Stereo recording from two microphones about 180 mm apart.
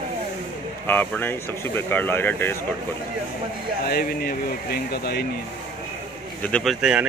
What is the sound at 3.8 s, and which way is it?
Speech, 60° left (ahead or behind).